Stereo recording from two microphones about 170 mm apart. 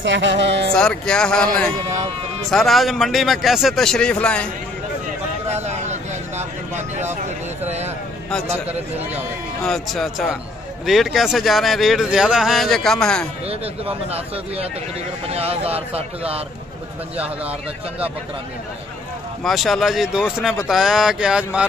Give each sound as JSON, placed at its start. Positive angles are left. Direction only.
{"t": 0.0, "sound": "speech", "side_deg": -90}
{"t": 0.7, "sound": "speech", "side_deg": 5}
{"t": 5.5, "sound": "a sound", "side_deg": -40}
{"t": 9.6, "sound": "speech", "side_deg": 0}
{"t": 13.5, "sound": "speech", "side_deg": -35}
{"t": 17.2, "sound": "a man's voice", "side_deg": -10}
{"t": 19.4, "sound": "speech", "side_deg": 0}